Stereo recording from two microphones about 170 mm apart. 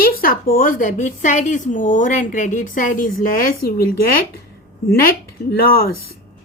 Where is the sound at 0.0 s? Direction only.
60° left (ahead or behind).